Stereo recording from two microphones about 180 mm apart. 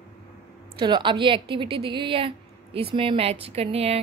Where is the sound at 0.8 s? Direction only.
25° right (ahead or behind).